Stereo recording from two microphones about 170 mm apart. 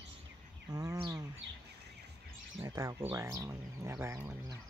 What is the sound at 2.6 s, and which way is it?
Speech, 20° right (ahead or behind).